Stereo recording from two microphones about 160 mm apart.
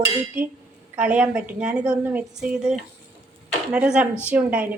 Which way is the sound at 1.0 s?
10° right (ahead or behind).